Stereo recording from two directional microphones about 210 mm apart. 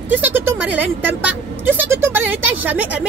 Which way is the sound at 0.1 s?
10° right (ahead or behind).